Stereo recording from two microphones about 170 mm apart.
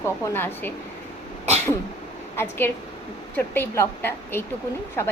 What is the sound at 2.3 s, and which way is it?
A woman's voice, 15° left (ahead or behind).